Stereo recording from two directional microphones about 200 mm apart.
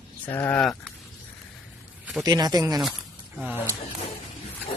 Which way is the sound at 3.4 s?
10° right (ahead or behind).